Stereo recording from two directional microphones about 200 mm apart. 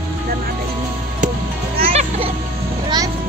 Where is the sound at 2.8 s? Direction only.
20° right (ahead or behind).